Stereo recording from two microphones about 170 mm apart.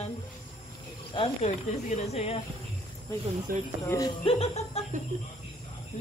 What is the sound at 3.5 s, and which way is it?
Speech, 55° right (ahead or behind).